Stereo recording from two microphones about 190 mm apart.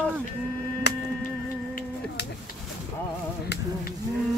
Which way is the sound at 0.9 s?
60° left (ahead or behind).